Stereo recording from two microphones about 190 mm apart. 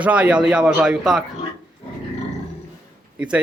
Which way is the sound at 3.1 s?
5° right (ahead or behind).